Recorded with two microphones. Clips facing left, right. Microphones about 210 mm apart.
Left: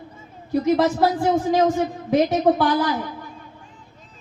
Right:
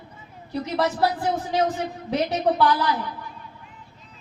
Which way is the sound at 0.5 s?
45° left (ahead or behind).